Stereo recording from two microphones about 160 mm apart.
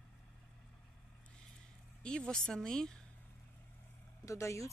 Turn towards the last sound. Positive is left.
turn(degrees=20)  # may be behind; listen again after turning